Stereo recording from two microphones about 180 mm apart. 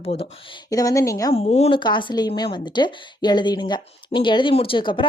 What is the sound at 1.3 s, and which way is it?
A woman's voice, 35° left (ahead or behind).